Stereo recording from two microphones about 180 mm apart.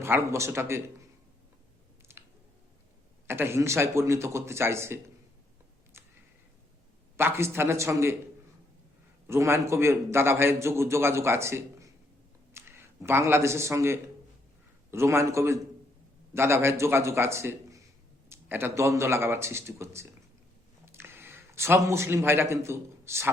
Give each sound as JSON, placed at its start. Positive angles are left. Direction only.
{"t": 0.0, "sound": "a man's voice", "side_deg": -15}
{"t": 2.1, "sound": "a sound", "side_deg": -15}
{"t": 3.2, "sound": "a man's voice", "side_deg": -15}
{"t": 7.2, "sound": "a man's voice", "side_deg": -15}
{"t": 9.2, "sound": "a man's voice", "side_deg": -15}